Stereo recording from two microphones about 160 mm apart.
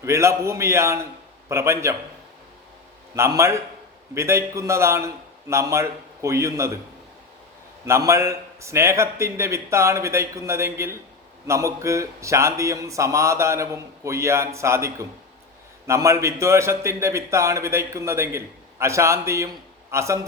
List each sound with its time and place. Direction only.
0.0 s a man's voice: 20° right (ahead or behind)
3.2 s a man's voice: 15° right (ahead or behind)
7.9 s a man's voice: 20° right (ahead or behind)